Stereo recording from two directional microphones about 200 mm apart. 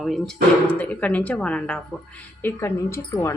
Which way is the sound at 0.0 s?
Centre (ahead or behind).